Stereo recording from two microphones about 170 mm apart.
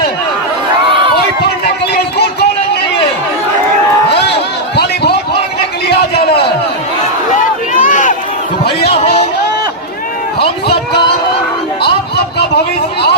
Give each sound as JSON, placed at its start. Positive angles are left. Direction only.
{"t": 0.9, "sound": "crowd", "side_deg": -30}
{"t": 1.9, "sound": "music", "side_deg": 70}
{"t": 5.9, "sound": "a sound", "side_deg": 70}
{"t": 7.7, "sound": "run", "side_deg": 50}